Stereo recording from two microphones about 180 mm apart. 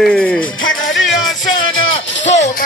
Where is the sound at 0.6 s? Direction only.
90° left.